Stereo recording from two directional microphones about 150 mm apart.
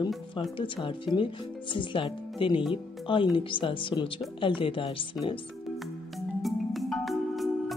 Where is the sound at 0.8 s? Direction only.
35° left (ahead or behind).